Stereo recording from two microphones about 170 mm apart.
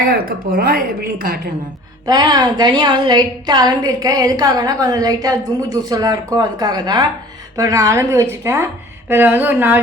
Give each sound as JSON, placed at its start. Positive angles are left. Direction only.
{"t": 0.1, "sound": "a woman's voice", "side_deg": -60}
{"t": 2.0, "sound": "a woman's voice", "side_deg": -25}